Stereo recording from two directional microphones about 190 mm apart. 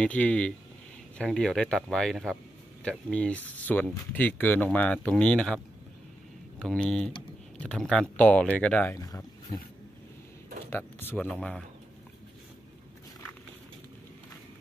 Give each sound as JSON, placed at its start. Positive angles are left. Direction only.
{"t": 0.0, "sound": "speech", "side_deg": 5}
{"t": 6.6, "sound": "speech", "side_deg": 5}
{"t": 8.9, "sound": "speech", "side_deg": 20}
{"t": 11.0, "sound": "speech", "side_deg": 10}